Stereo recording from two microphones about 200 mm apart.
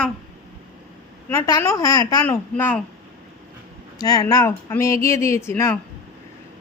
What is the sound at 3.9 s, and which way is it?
Speech, 20° left (ahead or behind).